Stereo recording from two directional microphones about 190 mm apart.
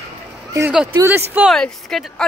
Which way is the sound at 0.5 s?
10° right (ahead or behind).